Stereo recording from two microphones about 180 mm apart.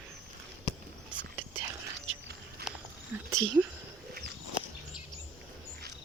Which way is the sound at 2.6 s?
65° right (ahead or behind).